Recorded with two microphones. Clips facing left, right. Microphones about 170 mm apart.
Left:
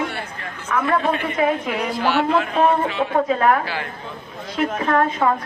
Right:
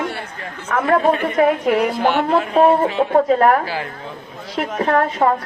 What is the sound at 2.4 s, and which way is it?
A woman's voice, 35° right (ahead or behind).